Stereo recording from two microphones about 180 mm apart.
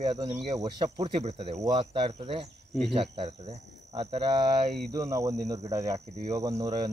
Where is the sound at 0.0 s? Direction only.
30° right (ahead or behind).